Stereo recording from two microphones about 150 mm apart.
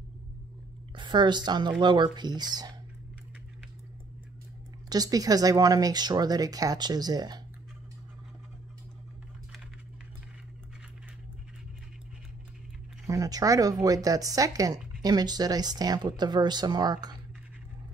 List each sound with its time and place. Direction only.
0.9 s speech: 30° right (ahead or behind)
4.8 s speech: 25° right (ahead or behind)
13.0 s speech: 25° right (ahead or behind)